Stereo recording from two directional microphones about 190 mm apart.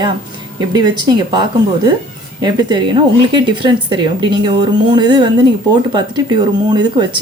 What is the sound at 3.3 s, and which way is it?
A woman's voice, 25° right (ahead or behind).